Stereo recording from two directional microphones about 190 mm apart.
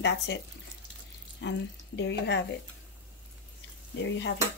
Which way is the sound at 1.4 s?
75° left (ahead or behind).